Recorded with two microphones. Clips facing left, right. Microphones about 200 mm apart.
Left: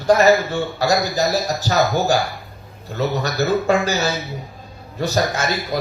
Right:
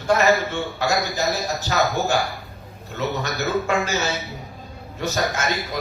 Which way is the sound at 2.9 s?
35° left (ahead or behind).